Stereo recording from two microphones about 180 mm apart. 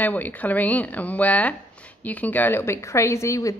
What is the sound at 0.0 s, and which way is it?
A woman's voice, 10° left (ahead or behind).